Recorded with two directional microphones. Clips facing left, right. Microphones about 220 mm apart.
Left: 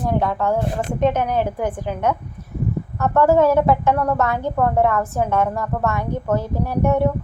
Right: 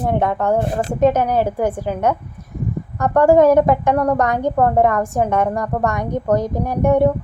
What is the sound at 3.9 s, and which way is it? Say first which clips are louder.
Speech: right 3 dB; 35° right (ahead or behind).